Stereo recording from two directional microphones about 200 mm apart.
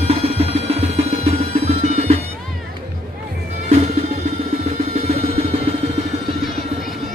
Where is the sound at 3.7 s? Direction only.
30° right (ahead or behind).